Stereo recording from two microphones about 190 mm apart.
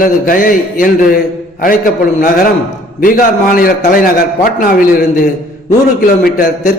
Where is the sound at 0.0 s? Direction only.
45° left (ahead or behind).